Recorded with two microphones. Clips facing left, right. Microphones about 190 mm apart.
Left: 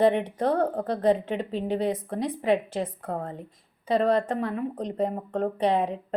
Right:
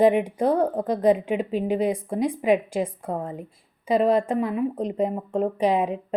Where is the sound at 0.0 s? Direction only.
10° right (ahead or behind).